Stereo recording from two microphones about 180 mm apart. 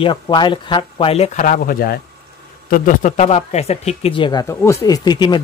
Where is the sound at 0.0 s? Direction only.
25° left (ahead or behind).